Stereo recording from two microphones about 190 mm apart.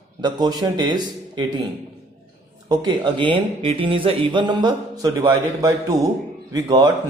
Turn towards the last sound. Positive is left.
turn(degrees=-20)  # may be behind; listen again after turning